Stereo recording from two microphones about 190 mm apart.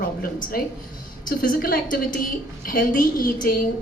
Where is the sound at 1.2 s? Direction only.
50° left (ahead or behind).